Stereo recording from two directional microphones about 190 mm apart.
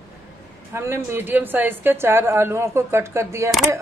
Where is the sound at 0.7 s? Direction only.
15° right (ahead or behind).